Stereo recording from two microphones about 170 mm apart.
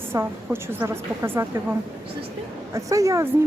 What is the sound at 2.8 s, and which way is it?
Speech, 20° right (ahead or behind).